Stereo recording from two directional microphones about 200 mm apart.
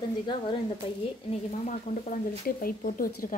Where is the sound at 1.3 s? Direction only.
35° left (ahead or behind).